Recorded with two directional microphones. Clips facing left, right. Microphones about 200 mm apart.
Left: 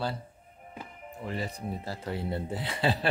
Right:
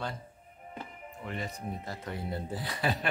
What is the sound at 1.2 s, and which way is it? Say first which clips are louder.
Speech: left 3 dB; 35° left (ahead or behind).